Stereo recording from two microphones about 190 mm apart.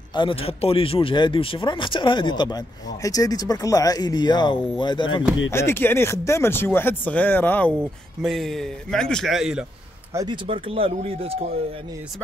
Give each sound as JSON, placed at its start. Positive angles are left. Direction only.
{"t": 0.1, "sound": "a man's voice", "side_deg": 25}
{"t": 5.5, "sound": "a man's voice", "side_deg": 15}
{"t": 10.1, "sound": "speech", "side_deg": -25}